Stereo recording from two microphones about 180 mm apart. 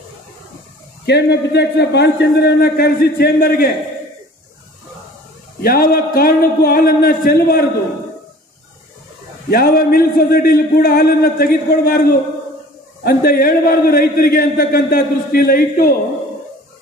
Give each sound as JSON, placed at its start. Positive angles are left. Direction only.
{"t": 1.0, "sound": "a man's voice", "side_deg": 65}
{"t": 5.6, "sound": "a man's voice", "side_deg": 55}
{"t": 9.5, "sound": "a man's voice", "side_deg": 55}